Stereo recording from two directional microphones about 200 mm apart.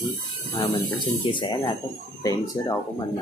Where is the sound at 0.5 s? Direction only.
25° left (ahead or behind).